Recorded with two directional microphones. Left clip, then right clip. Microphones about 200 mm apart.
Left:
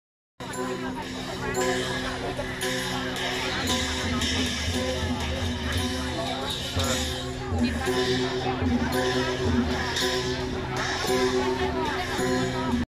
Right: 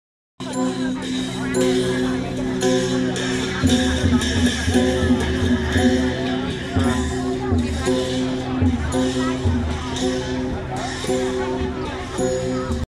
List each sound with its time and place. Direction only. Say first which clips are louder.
1.5 s music: right 6 dB; 55° right (ahead or behind)
3.6 s music: right 7 dB; 55° right (ahead or behind)
7.8 s music: right 3 dB; 15° right (ahead or behind)